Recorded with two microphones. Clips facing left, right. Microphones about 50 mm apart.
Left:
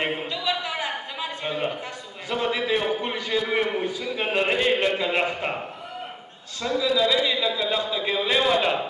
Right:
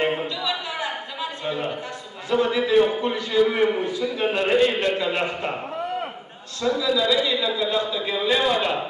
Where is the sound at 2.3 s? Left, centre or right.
Centre.